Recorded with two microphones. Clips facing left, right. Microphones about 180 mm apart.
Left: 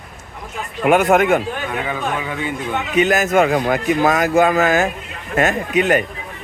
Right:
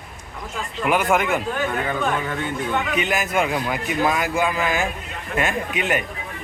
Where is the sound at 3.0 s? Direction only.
45° left (ahead or behind).